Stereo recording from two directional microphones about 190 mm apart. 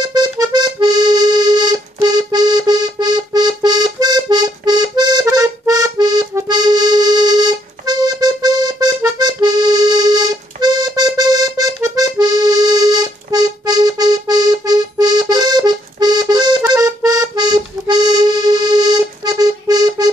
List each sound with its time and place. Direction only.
0.0 s accordion: 20° right (ahead or behind)